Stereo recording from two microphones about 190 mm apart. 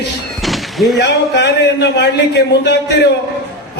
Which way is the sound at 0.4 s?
Centre (ahead or behind).